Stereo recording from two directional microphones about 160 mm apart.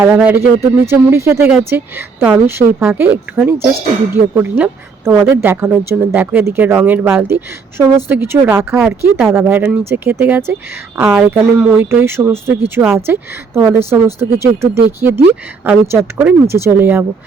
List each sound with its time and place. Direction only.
0.0 s a woman's voice: 10° right (ahead or behind)